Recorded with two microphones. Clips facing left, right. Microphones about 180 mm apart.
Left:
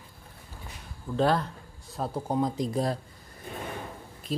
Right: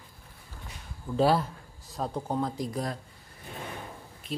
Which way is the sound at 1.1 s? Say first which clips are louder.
Right 1 dB; 5° right (ahead or behind).